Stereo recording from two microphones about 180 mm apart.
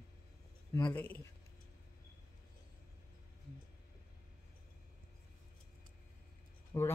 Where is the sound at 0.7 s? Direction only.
25° left (ahead or behind).